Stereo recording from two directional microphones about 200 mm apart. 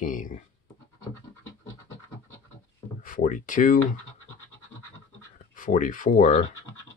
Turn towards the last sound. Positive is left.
turn(degrees=40)  # may be behind; listen again after turning